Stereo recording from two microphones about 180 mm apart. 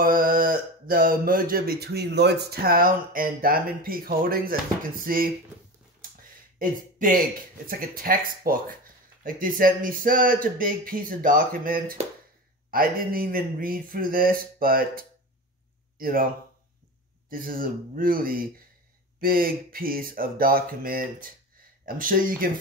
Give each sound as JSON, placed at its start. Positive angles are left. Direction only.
{"t": 0.0, "sound": "speech", "side_deg": -50}
{"t": 6.6, "sound": "speech", "side_deg": -50}
{"t": 17.3, "sound": "speech", "side_deg": -50}